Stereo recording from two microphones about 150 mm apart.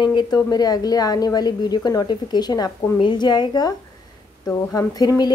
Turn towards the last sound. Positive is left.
turn(degrees=25)  # may be behind; listen again after turning